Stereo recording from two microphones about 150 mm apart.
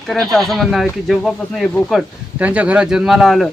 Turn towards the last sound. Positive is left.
turn(degrees=0)  # may be behind; listen again after turning